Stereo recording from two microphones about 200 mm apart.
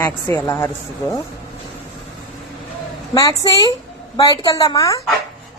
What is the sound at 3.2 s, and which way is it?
Speech, 15° left (ahead or behind).